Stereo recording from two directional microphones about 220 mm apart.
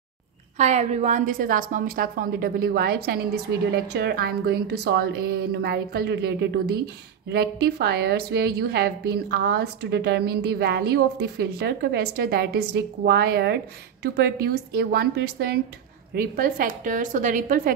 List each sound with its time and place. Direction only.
0.6 s a woman's voice: 30° right (ahead or behind)